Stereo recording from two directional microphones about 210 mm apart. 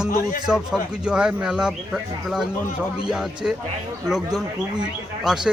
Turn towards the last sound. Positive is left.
turn(degrees=0)  # may be behind; listen again after turning